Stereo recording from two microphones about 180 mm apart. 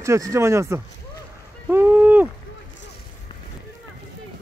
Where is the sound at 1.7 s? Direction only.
10° right (ahead or behind).